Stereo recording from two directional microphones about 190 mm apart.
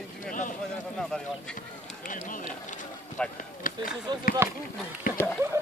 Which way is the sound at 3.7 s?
45° left (ahead or behind).